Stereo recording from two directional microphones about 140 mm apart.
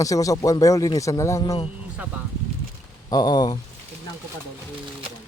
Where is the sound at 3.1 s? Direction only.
30° left (ahead or behind).